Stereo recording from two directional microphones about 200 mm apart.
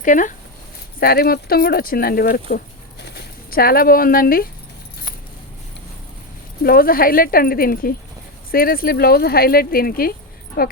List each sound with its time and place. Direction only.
0.0 s speech: 40° left (ahead or behind)
6.6 s speech: 45° left (ahead or behind)